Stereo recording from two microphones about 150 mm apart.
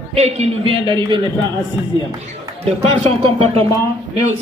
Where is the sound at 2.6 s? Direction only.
45° right (ahead or behind).